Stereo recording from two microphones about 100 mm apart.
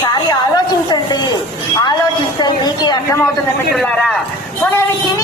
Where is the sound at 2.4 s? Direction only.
45° left (ahead or behind).